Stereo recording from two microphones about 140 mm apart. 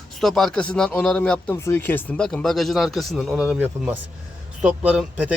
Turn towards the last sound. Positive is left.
turn(degrees=-10)  # may be behind; listen again after turning